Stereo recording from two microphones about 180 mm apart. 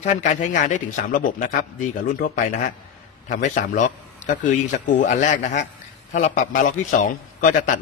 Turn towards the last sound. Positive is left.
turn(degrees=45)  # may be behind; listen again after turning